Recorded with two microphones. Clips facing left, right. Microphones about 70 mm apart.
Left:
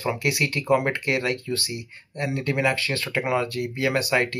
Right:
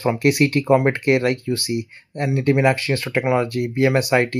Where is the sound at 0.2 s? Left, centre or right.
Right.